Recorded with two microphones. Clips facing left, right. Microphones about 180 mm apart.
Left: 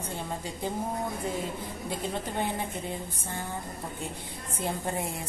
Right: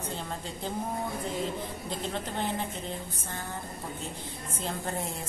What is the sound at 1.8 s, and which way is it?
Speech, 10° left (ahead or behind).